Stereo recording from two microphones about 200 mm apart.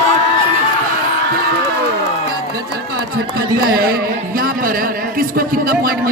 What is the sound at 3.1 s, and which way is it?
A man's voice, 50° right (ahead or behind).